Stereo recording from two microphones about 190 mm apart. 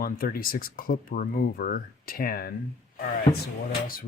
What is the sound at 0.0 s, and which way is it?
Speech, 50° left (ahead or behind).